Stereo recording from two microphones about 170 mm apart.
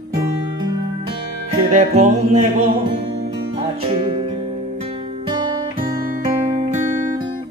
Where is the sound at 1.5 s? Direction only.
45° right (ahead or behind).